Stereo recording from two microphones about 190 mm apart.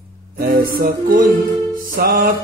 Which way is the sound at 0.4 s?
50° right (ahead or behind).